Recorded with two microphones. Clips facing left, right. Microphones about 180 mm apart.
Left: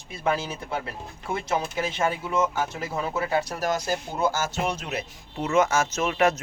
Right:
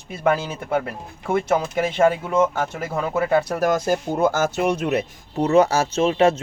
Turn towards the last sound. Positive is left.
turn(degrees=-30)  # may be behind; listen again after turning